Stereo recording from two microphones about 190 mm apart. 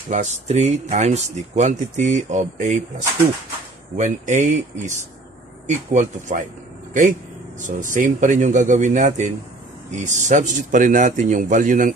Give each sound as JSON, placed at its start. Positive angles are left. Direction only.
{"t": 0.1, "sound": "speech", "side_deg": -35}
{"t": 3.9, "sound": "speech", "side_deg": -40}